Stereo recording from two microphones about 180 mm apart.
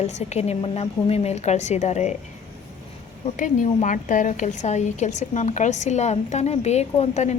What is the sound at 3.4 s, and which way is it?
A woman's voice, 45° left (ahead or behind).